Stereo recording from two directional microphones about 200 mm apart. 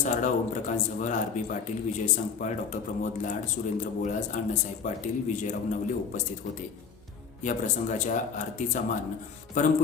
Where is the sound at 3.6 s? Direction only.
40° left (ahead or behind).